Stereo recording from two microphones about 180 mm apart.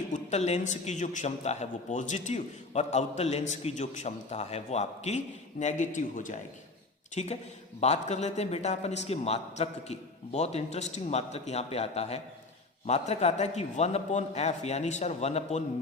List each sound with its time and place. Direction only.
0.1 s speech: 40° left (ahead or behind)